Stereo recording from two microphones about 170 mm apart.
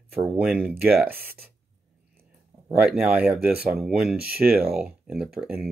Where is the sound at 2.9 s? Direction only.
5° right (ahead or behind).